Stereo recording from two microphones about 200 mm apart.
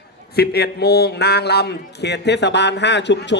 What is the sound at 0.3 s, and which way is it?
A man's voice, 50° left (ahead or behind).